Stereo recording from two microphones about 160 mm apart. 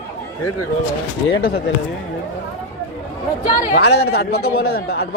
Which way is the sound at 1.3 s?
75° left (ahead or behind).